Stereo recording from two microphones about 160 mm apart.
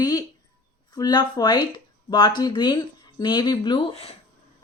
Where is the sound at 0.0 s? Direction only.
20° left (ahead or behind).